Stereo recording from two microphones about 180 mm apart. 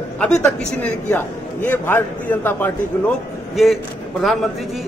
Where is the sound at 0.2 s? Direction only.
5° left (ahead or behind).